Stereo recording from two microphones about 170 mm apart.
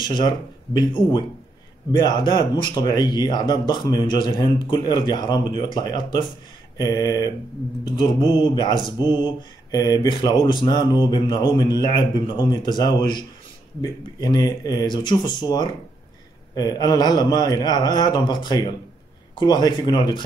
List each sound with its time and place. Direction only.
0.0 s speech: 25° left (ahead or behind)